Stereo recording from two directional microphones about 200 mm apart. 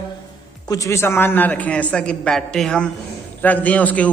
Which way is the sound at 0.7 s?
15° left (ahead or behind).